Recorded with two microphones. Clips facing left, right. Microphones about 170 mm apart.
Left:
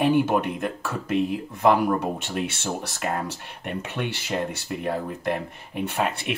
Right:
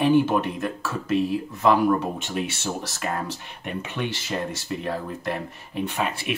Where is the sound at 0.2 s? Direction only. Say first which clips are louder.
Even; 55° left (ahead or behind).